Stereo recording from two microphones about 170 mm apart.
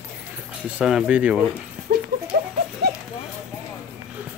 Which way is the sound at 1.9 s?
55° right (ahead or behind).